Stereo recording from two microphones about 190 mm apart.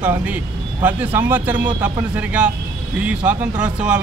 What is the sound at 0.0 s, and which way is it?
Speech, 10° right (ahead or behind).